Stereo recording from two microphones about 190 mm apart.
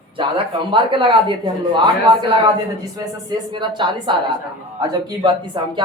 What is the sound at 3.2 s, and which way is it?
Speech, 25° right (ahead or behind).